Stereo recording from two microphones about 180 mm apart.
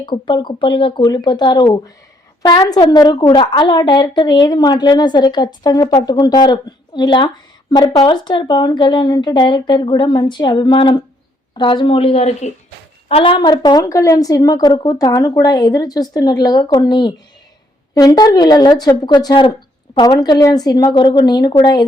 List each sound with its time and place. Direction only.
0.0 s a woman's voice: 25° left (ahead or behind)